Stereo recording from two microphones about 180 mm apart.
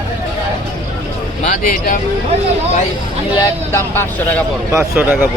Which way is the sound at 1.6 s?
50° left (ahead or behind).